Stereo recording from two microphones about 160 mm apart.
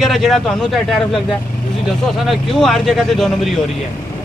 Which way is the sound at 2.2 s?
Centre (ahead or behind).